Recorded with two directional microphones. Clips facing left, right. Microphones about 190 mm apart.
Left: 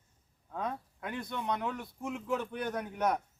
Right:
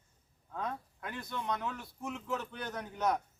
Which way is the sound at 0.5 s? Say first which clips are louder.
Left 2 dB; 20° left (ahead or behind).